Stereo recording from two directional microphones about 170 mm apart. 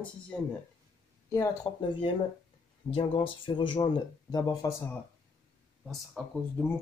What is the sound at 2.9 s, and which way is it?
Speech, 30° left (ahead or behind).